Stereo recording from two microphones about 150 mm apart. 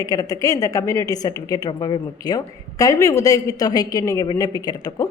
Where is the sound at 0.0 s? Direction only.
25° left (ahead or behind).